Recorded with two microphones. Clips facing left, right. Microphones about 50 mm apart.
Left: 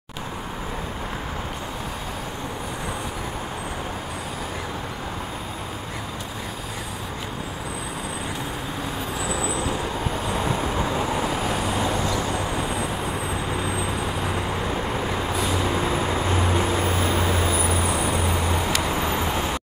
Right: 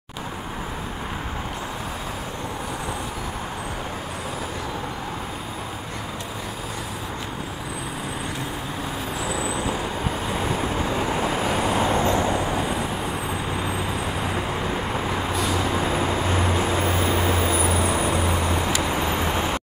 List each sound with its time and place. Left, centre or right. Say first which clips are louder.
9.3 s vehicle: even; centre
11.0 s vehicle: right 1 dB; centre
11.6 s vehicle: right 3 dB; right
15.3 s vehicle: even; centre
16.3 s vehicle: even; centre
16.9 s vehicle: right 1 dB; centre
18.9 s vehicle: even; right